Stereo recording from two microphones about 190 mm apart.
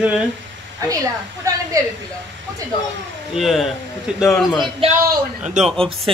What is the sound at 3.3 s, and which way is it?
Speech, centre (ahead or behind).